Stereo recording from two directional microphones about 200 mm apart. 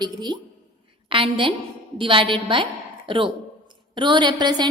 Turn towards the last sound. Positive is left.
turn(degrees=-20)  # may be behind; listen again after turning